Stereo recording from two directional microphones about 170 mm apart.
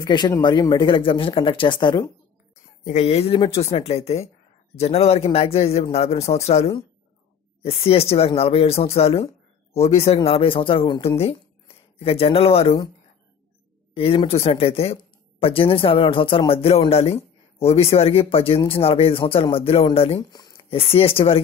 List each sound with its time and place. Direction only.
0.0 s speech: 25° left (ahead or behind)
2.5 s speech: 45° left (ahead or behind)
13.9 s speech: 35° left (ahead or behind)
20.2 s speech: 25° left (ahead or behind)